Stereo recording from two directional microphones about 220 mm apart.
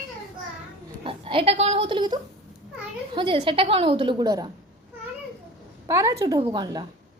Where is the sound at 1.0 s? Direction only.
25° right (ahead or behind).